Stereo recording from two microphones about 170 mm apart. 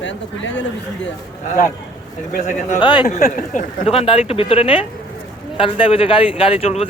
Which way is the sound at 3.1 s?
45° left (ahead or behind).